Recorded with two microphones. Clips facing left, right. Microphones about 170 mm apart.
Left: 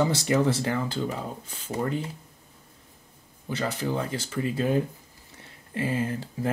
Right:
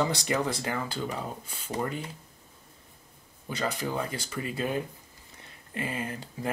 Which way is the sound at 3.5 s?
15° right (ahead or behind).